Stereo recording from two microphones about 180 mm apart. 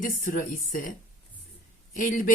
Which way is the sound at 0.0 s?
45° left (ahead or behind).